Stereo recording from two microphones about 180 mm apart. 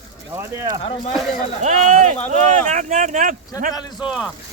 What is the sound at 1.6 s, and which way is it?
Speech, 45° right (ahead or behind).